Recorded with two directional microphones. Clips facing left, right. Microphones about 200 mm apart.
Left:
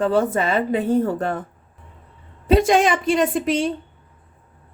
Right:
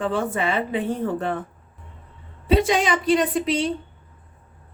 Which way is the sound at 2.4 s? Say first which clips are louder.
Left 4 dB; 45° left (ahead or behind).